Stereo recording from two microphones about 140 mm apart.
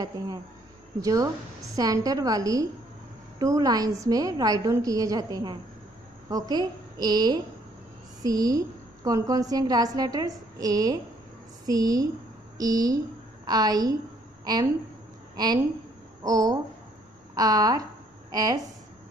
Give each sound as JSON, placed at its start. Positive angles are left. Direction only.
{"t": 1.0, "sound": "a woman's voice", "side_deg": -25}